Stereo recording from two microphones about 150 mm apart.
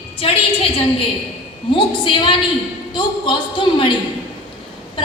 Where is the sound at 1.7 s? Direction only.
35° left (ahead or behind).